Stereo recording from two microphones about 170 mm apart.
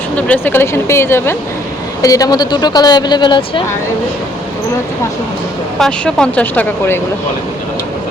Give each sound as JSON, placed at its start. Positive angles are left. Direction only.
{"t": 0.2, "sound": "speech", "side_deg": 10}
{"t": 5.8, "sound": "speech", "side_deg": 5}